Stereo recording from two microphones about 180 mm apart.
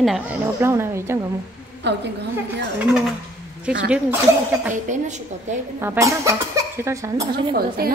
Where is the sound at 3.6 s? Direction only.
5° right (ahead or behind).